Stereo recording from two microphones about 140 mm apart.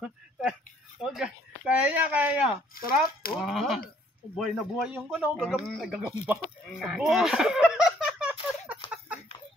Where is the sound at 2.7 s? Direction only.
90° left.